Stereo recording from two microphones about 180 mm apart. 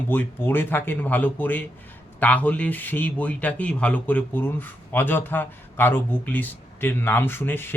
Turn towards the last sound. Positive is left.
turn(degrees=10)  # may be behind; listen again after turning